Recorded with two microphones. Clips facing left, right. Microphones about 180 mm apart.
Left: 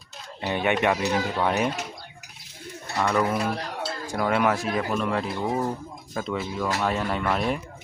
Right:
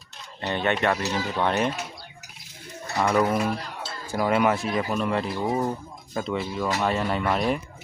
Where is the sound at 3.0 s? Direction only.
10° right (ahead or behind).